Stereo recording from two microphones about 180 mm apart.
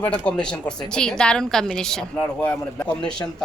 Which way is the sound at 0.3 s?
5° left (ahead or behind).